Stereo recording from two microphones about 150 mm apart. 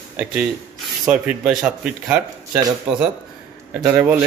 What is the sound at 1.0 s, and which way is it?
Speech, 5° right (ahead or behind).